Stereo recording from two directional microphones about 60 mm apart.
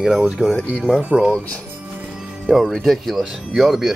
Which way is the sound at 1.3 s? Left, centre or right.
Centre.